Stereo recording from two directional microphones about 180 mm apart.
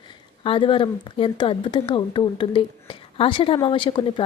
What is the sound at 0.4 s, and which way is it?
A woman's voice, 30° left (ahead or behind).